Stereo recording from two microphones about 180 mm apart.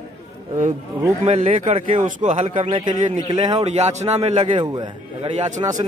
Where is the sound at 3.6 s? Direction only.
40° right (ahead or behind); by 5.8 s 20° right (ahead or behind).